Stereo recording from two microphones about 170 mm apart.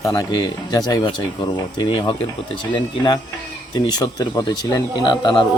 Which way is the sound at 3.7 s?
25° left (ahead or behind).